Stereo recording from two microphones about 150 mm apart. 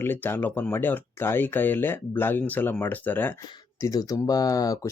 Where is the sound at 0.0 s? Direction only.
15° left (ahead or behind).